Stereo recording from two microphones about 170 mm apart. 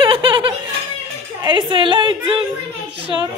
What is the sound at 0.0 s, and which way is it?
Laughter, 30° right (ahead or behind).